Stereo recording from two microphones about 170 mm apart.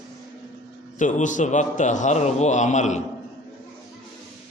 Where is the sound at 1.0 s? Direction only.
50° left (ahead or behind).